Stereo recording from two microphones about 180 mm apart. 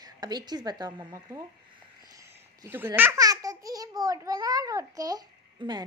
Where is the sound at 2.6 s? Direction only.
15° right (ahead or behind).